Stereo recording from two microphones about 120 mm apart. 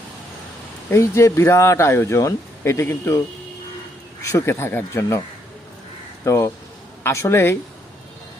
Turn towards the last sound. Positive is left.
turn(degrees=20)  # may be behind; listen again after turning